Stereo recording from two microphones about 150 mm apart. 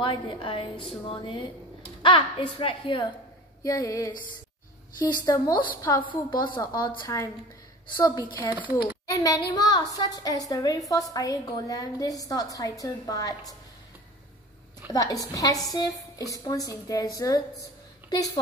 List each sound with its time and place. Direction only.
0.0 s a woman's voice: 35° left (ahead or behind)
14.9 s a woman's voice: 25° left (ahead or behind)